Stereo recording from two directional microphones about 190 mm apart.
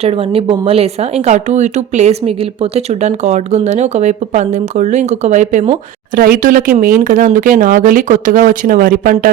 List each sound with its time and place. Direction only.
0.0 s speech: 30° right (ahead or behind)
6.1 s speech: 50° right (ahead or behind)